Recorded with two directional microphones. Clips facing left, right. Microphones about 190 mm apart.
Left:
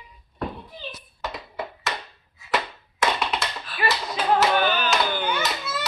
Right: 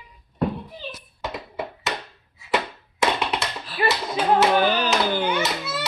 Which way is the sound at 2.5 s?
25° right (ahead or behind).